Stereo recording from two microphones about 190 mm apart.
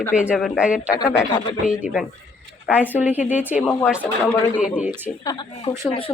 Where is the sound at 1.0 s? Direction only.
20° left (ahead or behind).